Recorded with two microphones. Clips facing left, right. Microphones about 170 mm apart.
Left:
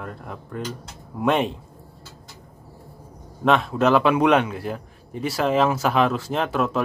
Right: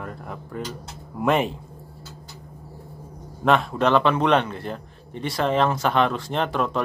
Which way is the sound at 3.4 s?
Centre (ahead or behind).